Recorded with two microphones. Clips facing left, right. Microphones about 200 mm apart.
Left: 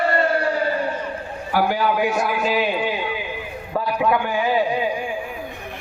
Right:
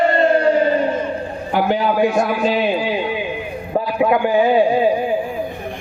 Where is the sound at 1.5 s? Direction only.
25° right (ahead or behind).